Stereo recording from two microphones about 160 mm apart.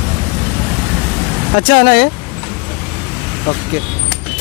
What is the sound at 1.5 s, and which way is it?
Speech, 80° left.